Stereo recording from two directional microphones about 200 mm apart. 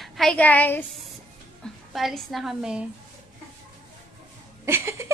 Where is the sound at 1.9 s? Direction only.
Centre (ahead or behind).